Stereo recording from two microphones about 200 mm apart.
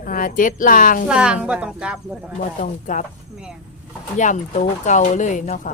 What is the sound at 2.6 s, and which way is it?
Speech, 40° left (ahead or behind).